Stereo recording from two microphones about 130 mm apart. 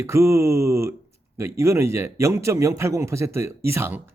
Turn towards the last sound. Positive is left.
turn(degrees=-15)  # may be behind; listen again after turning